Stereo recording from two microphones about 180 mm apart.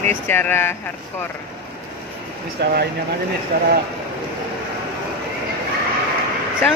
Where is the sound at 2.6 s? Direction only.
70° right (ahead or behind).